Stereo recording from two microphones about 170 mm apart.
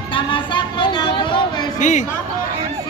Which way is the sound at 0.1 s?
30° left (ahead or behind).